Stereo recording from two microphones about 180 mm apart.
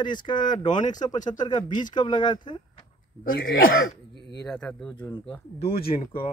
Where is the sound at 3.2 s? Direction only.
55° left (ahead or behind).